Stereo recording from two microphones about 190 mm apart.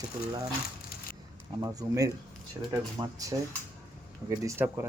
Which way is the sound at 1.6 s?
20° right (ahead or behind).